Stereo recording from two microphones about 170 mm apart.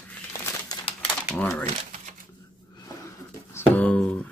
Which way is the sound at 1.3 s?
10° left (ahead or behind).